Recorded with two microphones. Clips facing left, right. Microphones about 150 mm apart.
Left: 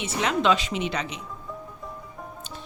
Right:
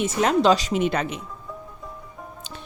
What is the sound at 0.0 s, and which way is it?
A woman's voice, 45° right (ahead or behind).